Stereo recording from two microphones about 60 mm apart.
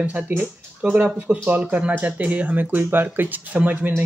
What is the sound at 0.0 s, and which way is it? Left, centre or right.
Speech, right.